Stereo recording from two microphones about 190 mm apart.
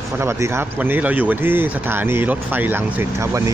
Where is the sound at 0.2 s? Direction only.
15° right (ahead or behind).